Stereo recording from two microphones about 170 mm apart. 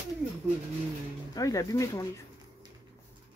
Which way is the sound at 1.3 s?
20° left (ahead or behind).